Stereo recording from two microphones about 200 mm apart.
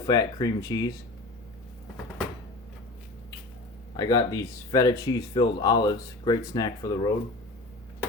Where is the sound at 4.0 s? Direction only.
15° left (ahead or behind).